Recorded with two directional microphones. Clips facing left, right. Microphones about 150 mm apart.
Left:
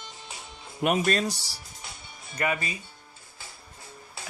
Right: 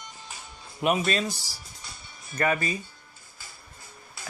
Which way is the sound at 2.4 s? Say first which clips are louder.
Right 3 dB; 15° left (ahead or behind).